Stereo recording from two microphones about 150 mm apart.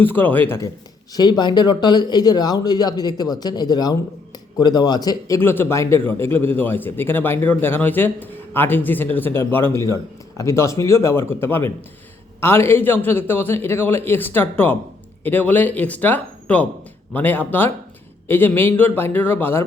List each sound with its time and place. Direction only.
0.0 s a man's voice: 15° left (ahead or behind)
1.1 s speech: 30° left (ahead or behind)
5.4 s a man's voice: 15° left (ahead or behind)